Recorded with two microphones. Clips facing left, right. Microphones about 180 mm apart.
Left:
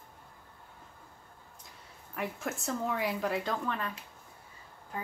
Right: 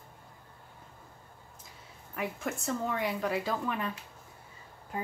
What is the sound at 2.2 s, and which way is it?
Speech, centre (ahead or behind).